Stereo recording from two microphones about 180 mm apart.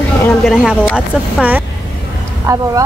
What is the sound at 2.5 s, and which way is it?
Speech, 20° right (ahead or behind).